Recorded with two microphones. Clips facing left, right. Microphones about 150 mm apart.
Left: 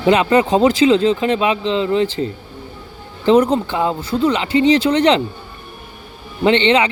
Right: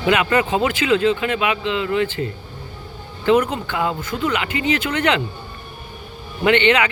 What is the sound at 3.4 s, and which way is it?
Speech, 40° left (ahead or behind).